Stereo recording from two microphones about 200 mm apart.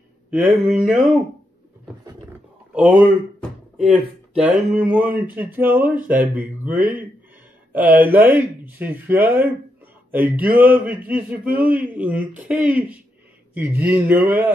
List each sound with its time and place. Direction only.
0.3 s mantra: 5° right (ahead or behind)
2.7 s speech: 5° right (ahead or behind)